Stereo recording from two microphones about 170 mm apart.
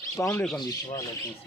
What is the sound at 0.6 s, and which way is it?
Speech, 20° left (ahead or behind).